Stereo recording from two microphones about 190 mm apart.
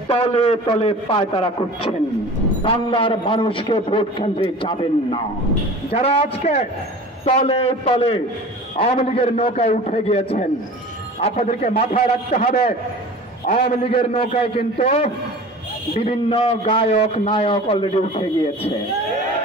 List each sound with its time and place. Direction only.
0.1 s a man's voice: 30° left (ahead or behind)